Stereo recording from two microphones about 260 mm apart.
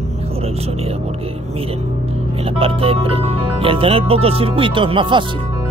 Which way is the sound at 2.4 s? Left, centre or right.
Right.